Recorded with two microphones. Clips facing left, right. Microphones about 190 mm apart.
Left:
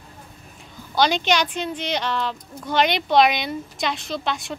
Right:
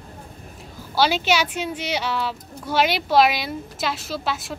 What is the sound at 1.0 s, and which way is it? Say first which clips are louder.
A woman's voice: even; 5° right (ahead or behind).